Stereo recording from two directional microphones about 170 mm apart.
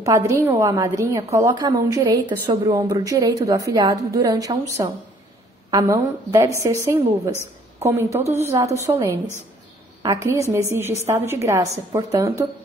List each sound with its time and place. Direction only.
0.4 s a woman's voice: 15° right (ahead or behind)